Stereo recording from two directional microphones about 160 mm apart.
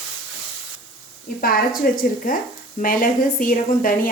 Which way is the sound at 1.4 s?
65° left (ahead or behind).